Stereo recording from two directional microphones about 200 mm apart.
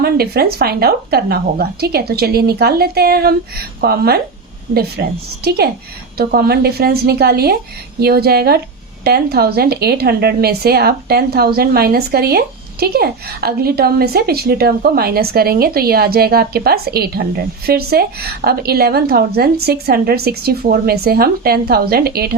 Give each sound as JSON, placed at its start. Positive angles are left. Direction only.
{"t": 0.0, "sound": "a woman's voice", "side_deg": -50}